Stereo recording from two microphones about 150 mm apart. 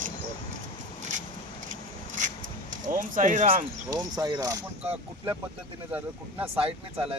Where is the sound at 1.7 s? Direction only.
55° right (ahead or behind).